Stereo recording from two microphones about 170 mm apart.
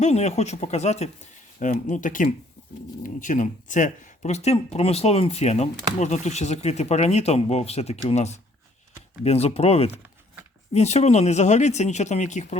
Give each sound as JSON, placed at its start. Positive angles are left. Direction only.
{"t": 0.0, "sound": "speech", "side_deg": 40}